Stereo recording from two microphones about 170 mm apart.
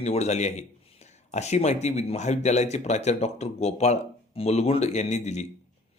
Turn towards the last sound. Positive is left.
turn(degrees=40)  # may be behind; listen again after turning